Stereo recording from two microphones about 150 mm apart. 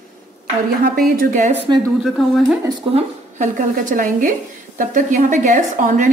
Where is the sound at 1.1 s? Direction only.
55° right (ahead or behind).